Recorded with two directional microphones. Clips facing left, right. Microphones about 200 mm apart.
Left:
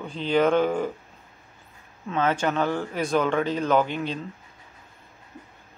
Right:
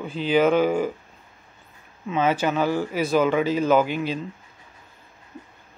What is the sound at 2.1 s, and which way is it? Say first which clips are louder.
Speech: right 2 dB; 10° right (ahead or behind).